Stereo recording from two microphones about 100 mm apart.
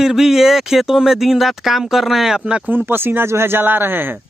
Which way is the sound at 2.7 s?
20° right (ahead or behind).